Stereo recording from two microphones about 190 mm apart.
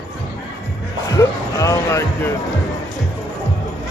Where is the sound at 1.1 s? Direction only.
15° left (ahead or behind).